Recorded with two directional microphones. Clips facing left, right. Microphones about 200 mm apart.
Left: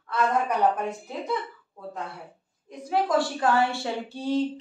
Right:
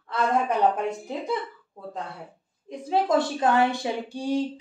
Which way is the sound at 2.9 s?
20° right (ahead or behind).